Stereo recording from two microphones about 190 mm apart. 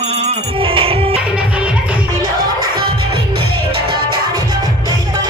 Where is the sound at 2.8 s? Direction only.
55° right (ahead or behind).